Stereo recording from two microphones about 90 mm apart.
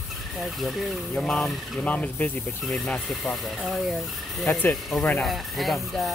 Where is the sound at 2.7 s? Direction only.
Centre (ahead or behind).